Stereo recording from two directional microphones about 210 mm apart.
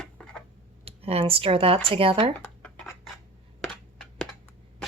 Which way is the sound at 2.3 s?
5° left (ahead or behind).